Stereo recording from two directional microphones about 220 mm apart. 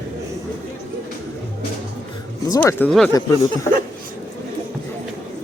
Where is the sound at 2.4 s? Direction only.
10° left (ahead or behind).